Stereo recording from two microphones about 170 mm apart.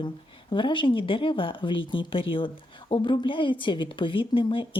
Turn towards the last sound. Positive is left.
turn(degrees=30)  # may be behind; listen again after turning